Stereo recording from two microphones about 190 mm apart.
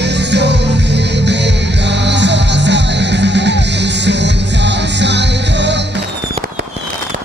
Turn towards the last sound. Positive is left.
turn(degrees=-65)  # may be behind; listen again after turning